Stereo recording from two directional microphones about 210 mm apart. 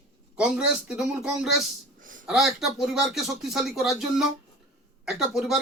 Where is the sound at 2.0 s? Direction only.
40° right (ahead or behind).